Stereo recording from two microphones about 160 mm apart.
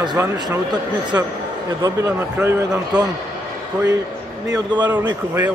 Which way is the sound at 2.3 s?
10° right (ahead or behind).